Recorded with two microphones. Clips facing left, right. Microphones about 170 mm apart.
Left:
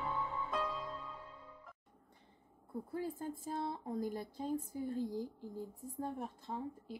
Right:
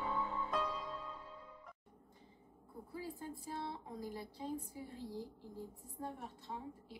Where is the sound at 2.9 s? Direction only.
50° left (ahead or behind).